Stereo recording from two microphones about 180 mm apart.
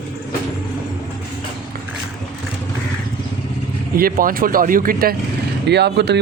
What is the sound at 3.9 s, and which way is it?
Speech, 50° right (ahead or behind).